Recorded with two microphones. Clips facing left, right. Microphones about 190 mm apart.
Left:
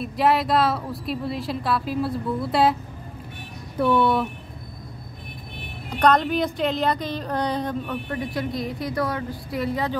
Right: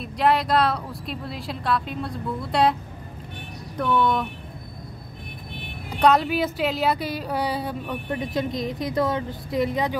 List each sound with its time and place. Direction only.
0.0 s a woman's voice: centre (ahead or behind)
3.7 s speech: 5° left (ahead or behind)
5.9 s speech: 10° right (ahead or behind)
8.1 s a woman's voice: 20° right (ahead or behind)